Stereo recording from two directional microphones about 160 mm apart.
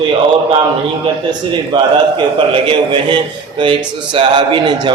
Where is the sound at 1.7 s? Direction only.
25° right (ahead or behind).